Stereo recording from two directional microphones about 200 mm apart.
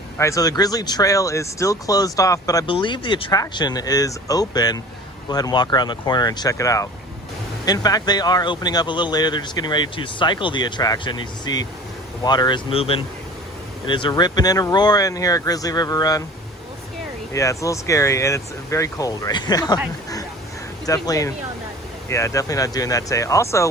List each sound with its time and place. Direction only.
0.2 s speech: 15° left (ahead or behind)
17.3 s speech: 15° left (ahead or behind)
20.8 s speech: 15° left (ahead or behind)